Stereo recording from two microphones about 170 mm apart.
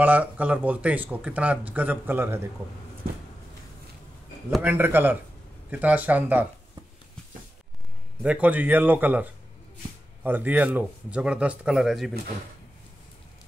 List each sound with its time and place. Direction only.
0.0 s speech: 10° right (ahead or behind)
4.5 s speech: 10° right (ahead or behind)
8.2 s speech: 10° right (ahead or behind)